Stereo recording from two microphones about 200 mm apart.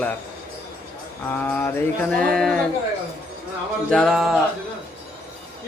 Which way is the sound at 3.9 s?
Centre (ahead or behind).